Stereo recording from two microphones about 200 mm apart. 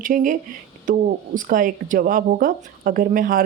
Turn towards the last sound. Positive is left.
turn(degrees=-45)  # may be behind; listen again after turning